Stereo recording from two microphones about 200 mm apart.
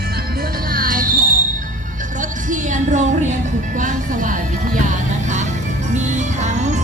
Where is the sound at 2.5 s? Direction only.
40° right (ahead or behind).